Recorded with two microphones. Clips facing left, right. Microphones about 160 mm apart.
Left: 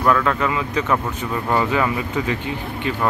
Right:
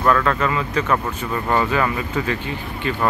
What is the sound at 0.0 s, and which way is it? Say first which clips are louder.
Speech: even; 10° left (ahead or behind).